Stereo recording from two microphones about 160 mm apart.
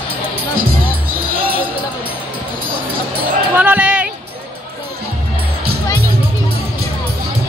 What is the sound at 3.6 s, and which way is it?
Music, 10° right (ahead or behind).